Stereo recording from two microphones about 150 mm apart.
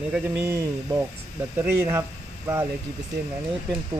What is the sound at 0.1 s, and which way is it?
Speech, 15° right (ahead or behind).